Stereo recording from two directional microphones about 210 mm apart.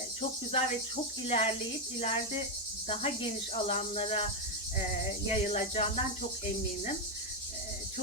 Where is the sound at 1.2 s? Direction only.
25° left (ahead or behind).